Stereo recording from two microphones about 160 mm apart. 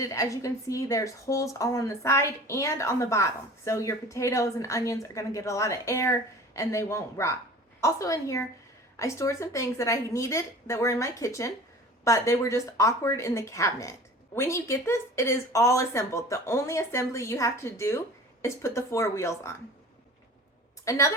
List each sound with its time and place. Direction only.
0.0 s a woman's voice: 20° left (ahead or behind)
20.9 s a woman's voice: 20° left (ahead or behind)